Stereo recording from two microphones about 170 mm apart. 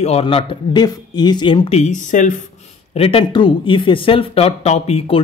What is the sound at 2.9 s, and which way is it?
Speech, 35° left (ahead or behind).